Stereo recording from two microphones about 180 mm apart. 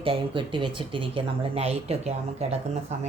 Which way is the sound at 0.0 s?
30° right (ahead or behind).